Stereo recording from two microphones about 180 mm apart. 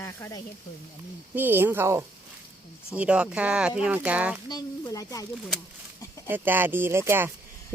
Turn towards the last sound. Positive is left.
turn(degrees=-15)  # may be behind; listen again after turning